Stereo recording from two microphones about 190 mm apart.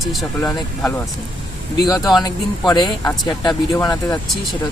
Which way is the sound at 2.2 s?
20° left (ahead or behind).